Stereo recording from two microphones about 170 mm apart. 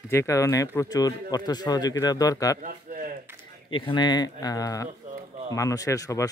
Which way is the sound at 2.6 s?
50° right (ahead or behind).